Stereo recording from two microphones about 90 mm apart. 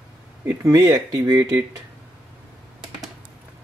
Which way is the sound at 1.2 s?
35° right (ahead or behind).